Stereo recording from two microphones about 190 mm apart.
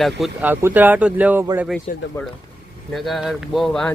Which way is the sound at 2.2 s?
15° left (ahead or behind).